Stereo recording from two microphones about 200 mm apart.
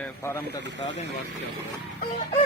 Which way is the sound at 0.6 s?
60° right (ahead or behind).